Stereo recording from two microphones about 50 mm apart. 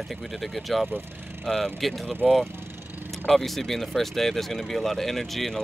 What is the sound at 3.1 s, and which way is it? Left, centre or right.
Speech, centre.